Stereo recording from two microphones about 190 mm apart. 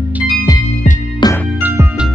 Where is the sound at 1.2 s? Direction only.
20° left (ahead or behind).